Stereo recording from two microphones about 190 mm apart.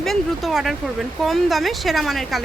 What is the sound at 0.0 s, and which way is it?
A woman's voice, centre (ahead or behind).